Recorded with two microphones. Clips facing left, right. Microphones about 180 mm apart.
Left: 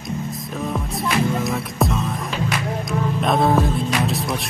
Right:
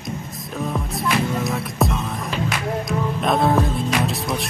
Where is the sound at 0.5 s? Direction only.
Centre (ahead or behind).